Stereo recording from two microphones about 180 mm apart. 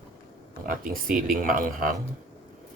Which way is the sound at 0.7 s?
50° right (ahead or behind).